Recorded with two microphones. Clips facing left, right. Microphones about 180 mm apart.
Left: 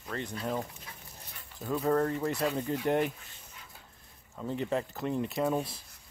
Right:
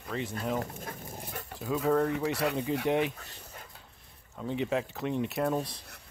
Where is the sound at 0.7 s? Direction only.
50° right (ahead or behind).